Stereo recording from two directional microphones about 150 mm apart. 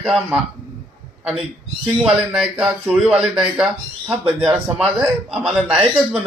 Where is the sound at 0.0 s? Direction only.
5° right (ahead or behind).